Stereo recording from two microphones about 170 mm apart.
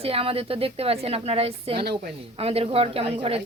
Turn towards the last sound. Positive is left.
turn(degrees=-35)  # may be behind; listen again after turning